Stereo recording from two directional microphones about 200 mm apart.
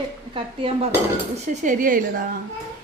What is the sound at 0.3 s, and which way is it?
Speech, 25° right (ahead or behind).